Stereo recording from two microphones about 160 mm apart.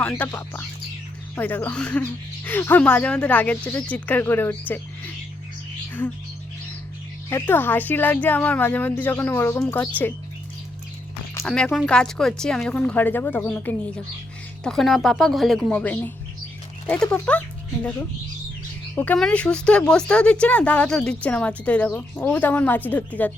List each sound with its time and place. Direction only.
0.3 s speech: 15° left (ahead or behind)
7.3 s speech: 15° left (ahead or behind)
11.4 s speech: 5° left (ahead or behind)
18.9 s speech: 5° left (ahead or behind)